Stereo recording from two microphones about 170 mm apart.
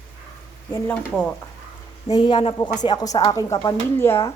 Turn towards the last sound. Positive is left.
turn(degrees=15)  # may be behind; listen again after turning